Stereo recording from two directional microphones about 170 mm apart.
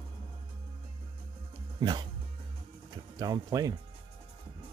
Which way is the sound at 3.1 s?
25° right (ahead or behind).